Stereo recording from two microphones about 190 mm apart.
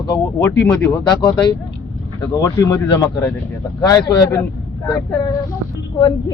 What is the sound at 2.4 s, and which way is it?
Speech, 20° left (ahead or behind).